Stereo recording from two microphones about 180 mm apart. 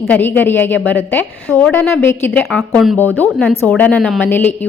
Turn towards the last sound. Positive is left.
turn(degrees=10)  # may be behind; listen again after turning